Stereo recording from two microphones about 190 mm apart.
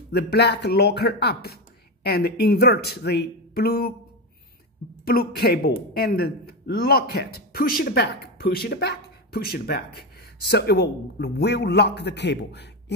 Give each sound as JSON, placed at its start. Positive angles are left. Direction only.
{"t": 0.1, "sound": "speech", "side_deg": 60}
{"t": 5.0, "sound": "speech", "side_deg": 55}